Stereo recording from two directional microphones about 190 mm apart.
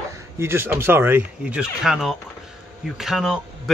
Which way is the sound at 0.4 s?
15° right (ahead or behind).